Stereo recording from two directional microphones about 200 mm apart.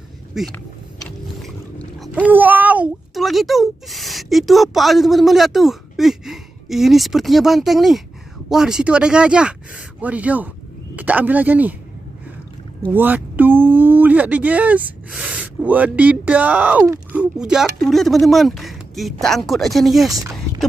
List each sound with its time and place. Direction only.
0.3 s a child's voice: centre (ahead or behind)
12.9 s speech: 10° right (ahead or behind)
20.1 s speech: 15° right (ahead or behind)